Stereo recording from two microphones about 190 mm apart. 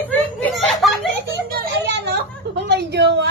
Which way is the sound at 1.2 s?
60° right (ahead or behind).